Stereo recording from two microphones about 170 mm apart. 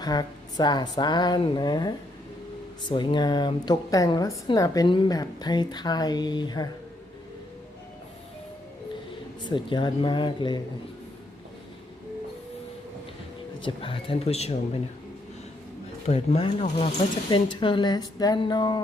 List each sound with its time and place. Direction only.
0.0 s a woman's voice: 25° left (ahead or behind)
9.5 s a woman's voice: 30° left (ahead or behind)
13.6 s speech: 30° left (ahead or behind)
16.0 s a woman's voice: 35° left (ahead or behind)